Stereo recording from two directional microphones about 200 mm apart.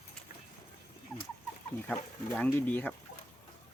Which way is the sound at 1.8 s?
5° left (ahead or behind).